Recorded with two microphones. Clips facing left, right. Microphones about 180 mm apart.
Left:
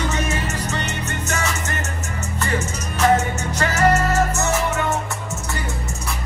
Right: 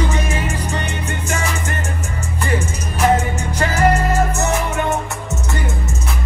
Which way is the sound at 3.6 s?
35° right (ahead or behind).